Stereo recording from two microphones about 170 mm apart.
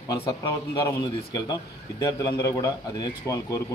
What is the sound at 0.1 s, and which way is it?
A man's voice, 25° left (ahead or behind).